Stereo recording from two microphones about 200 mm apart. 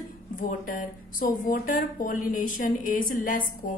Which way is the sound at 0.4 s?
45° left (ahead or behind).